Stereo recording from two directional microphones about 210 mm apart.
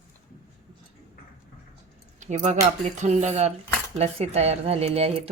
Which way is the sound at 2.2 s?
35° right (ahead or behind).